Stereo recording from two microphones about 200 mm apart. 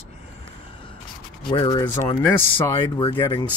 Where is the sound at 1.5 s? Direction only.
20° left (ahead or behind).